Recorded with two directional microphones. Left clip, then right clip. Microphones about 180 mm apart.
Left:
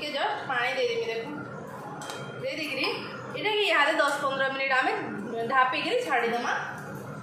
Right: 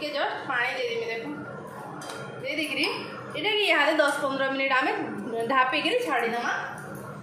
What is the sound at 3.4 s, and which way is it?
A woman's voice, 30° right (ahead or behind).